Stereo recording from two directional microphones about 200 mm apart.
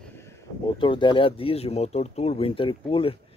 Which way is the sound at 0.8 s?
25° left (ahead or behind).